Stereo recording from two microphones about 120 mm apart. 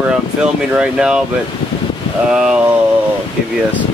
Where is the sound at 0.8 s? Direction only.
5° right (ahead or behind).